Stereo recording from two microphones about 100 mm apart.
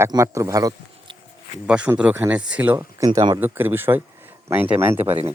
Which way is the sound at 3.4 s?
20° right (ahead or behind).